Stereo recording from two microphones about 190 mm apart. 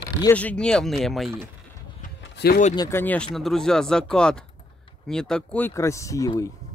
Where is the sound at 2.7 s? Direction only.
15° left (ahead or behind).